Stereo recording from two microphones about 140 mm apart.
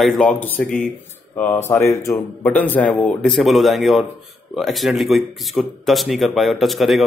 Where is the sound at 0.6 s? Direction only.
70° left (ahead or behind).